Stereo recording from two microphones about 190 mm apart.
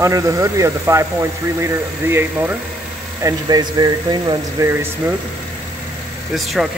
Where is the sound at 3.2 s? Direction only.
20° right (ahead or behind).